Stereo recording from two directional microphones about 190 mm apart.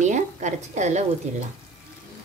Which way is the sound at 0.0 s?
40° right (ahead or behind).